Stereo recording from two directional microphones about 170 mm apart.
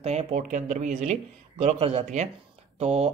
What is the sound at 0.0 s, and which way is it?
Speech, 40° right (ahead or behind).